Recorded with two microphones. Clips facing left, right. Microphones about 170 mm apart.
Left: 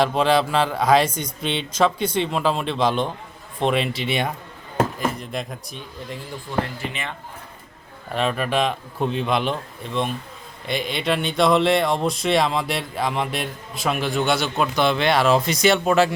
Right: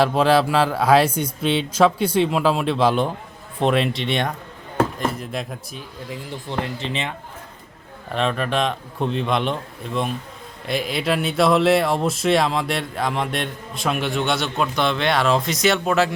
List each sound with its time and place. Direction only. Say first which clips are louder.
0.0 s speech: right 2 dB; 5° right (ahead or behind)
6.5 s speech: even; 25° right (ahead or behind)
8.1 s speech: even; 5° left (ahead or behind)